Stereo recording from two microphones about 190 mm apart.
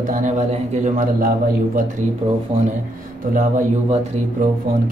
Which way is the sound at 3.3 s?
40° right (ahead or behind).